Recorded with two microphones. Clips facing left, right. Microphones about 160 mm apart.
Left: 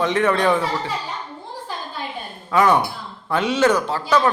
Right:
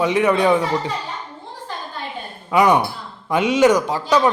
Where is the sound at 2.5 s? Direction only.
15° right (ahead or behind).